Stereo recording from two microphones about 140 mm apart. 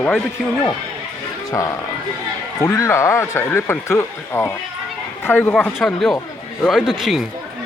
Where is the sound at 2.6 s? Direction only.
20° left (ahead or behind); by 7.3 s centre (ahead or behind).